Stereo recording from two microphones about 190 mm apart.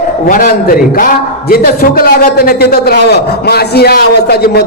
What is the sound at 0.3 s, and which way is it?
A man's voice, 45° left (ahead or behind).